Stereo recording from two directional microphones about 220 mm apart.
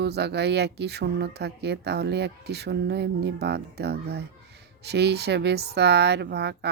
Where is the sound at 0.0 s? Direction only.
50° right (ahead or behind).